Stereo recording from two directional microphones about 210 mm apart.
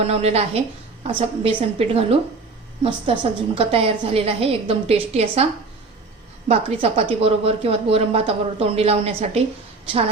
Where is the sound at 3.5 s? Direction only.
25° right (ahead or behind).